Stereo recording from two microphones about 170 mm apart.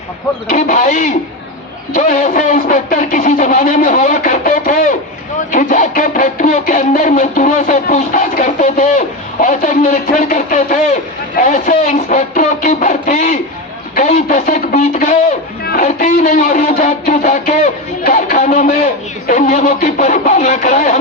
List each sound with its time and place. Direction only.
0.4 s music: 50° left (ahead or behind)